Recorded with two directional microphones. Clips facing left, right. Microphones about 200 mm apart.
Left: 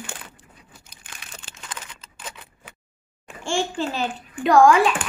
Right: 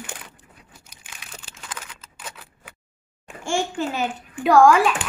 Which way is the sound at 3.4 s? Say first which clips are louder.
Even; 10° right (ahead or behind).